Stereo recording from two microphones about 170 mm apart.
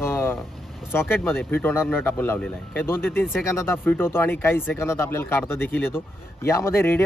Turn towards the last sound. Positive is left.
turn(degrees=15)  # may be behind; listen again after turning